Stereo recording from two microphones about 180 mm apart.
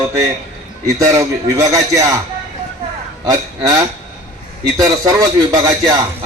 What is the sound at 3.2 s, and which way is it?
A man's voice, 20° right (ahead or behind).